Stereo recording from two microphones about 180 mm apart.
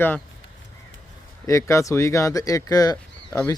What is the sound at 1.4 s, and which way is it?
Speech, 15° left (ahead or behind).